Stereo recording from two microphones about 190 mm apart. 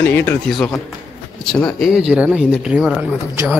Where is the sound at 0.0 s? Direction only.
10° left (ahead or behind).